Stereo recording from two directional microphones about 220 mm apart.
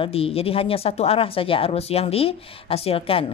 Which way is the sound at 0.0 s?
25° left (ahead or behind).